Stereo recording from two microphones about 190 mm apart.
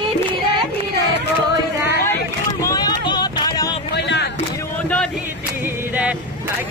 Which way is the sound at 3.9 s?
65° left (ahead or behind).